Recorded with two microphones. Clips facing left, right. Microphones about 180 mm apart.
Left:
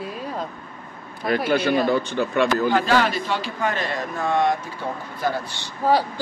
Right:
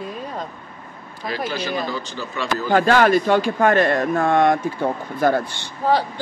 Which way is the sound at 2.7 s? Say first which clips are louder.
Right 4 dB; 50° right (ahead or behind).